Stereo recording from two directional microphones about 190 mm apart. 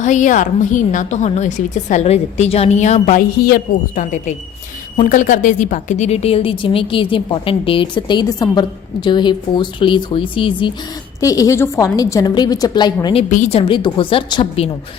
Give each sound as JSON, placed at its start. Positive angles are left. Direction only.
{"t": 0.0, "sound": "a woman's voice", "side_deg": 40}
{"t": 13.3, "sound": "a woman's voice", "side_deg": 35}